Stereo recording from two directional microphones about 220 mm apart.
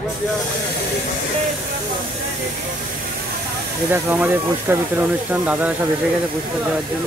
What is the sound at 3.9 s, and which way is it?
Speech, 10° right (ahead or behind).